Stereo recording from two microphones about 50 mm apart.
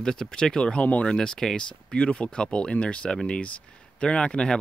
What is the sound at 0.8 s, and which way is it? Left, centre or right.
Speech, left.